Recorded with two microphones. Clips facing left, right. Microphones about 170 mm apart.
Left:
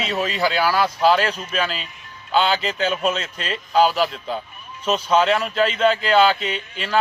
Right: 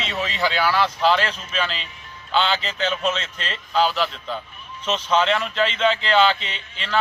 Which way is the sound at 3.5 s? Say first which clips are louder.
Left 4 dB; 40° left (ahead or behind).